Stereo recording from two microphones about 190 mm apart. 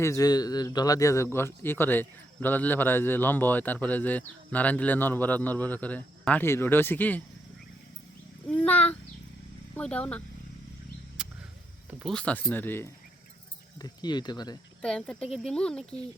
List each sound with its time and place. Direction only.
0.0 s speech: 20° left (ahead or behind)
8.6 s speech: 5° left (ahead or behind)
11.2 s a sound: 5° right (ahead or behind)
11.9 s speech: 10° right (ahead or behind)
12.1 s speech: 5° left (ahead or behind)
14.8 s speech: 5° left (ahead or behind)